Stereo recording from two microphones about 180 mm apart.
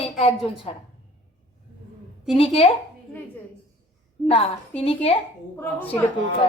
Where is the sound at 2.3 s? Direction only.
30° left (ahead or behind).